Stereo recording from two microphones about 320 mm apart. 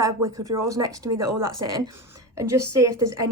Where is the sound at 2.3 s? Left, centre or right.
Centre.